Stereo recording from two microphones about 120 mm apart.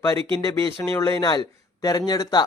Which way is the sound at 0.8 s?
25° left (ahead or behind).